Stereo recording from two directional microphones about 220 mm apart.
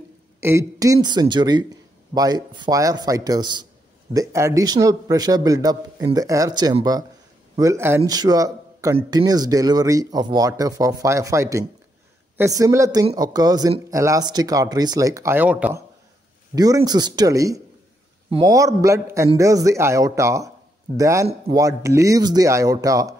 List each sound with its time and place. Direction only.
0.4 s speech: 10° right (ahead or behind)